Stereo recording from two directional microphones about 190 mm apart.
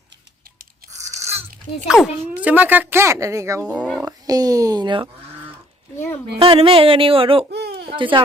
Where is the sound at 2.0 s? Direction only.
5° right (ahead or behind).